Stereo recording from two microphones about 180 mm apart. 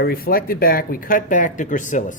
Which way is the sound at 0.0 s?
55° left (ahead or behind).